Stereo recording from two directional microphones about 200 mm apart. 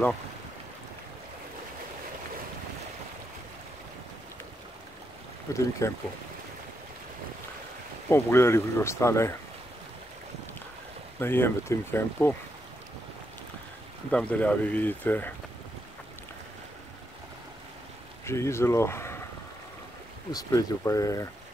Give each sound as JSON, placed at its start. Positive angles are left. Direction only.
{"t": 5.5, "sound": "speech", "side_deg": 15}
{"t": 8.1, "sound": "speech", "side_deg": 10}
{"t": 11.1, "sound": "speech", "side_deg": 10}
{"t": 14.1, "sound": "speech", "side_deg": 5}
{"t": 18.2, "sound": "speech", "side_deg": 15}
{"t": 20.2, "sound": "speech", "side_deg": 20}